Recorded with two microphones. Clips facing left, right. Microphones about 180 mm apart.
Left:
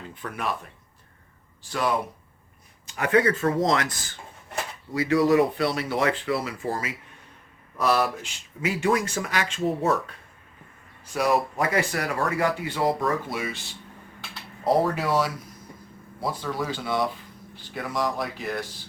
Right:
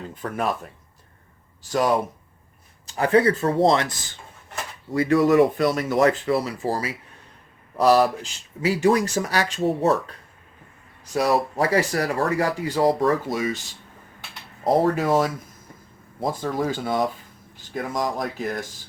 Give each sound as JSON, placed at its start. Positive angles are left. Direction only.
{"t": 0.1, "sound": "speech", "side_deg": -45}
{"t": 1.7, "sound": "speech", "side_deg": -40}
{"t": 4.9, "sound": "speech", "side_deg": -50}
{"t": 11.0, "sound": "speech", "side_deg": -35}